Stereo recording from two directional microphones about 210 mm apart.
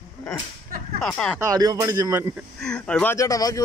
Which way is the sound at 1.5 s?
20° right (ahead or behind).